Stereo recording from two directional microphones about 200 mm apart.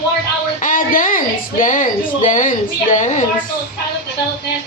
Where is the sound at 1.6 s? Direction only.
40° left (ahead or behind).